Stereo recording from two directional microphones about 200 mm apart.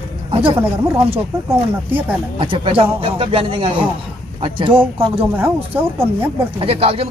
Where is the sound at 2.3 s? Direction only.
25° right (ahead or behind).